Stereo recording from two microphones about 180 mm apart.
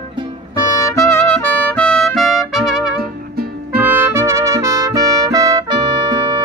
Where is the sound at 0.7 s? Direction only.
15° left (ahead or behind); by 2.9 s centre (ahead or behind).